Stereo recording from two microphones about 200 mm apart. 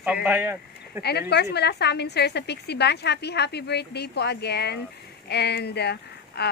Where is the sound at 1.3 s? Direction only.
55° left (ahead or behind).